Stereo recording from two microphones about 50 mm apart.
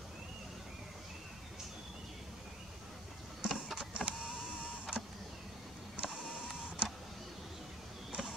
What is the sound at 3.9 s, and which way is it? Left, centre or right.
Power windows, centre.